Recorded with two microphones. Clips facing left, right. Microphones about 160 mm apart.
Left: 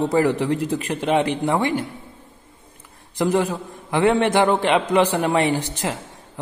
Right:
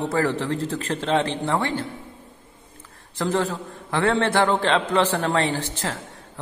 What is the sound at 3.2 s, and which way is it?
A man's voice, 15° left (ahead or behind).